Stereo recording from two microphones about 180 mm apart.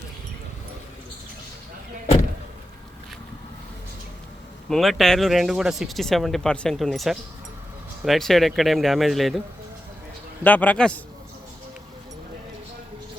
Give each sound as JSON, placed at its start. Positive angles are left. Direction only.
{"t": 4.7, "sound": "speech", "side_deg": 0}
{"t": 10.4, "sound": "a man's voice", "side_deg": 10}